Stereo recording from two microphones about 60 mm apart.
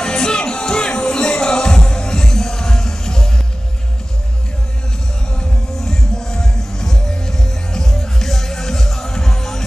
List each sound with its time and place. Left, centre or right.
0.0 s music: centre
5.8 s music: centre